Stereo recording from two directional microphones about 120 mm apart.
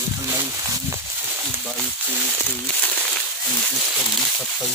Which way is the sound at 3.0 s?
Centre (ahead or behind).